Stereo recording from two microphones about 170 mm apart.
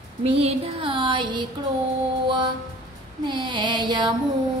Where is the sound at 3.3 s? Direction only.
25° right (ahead or behind).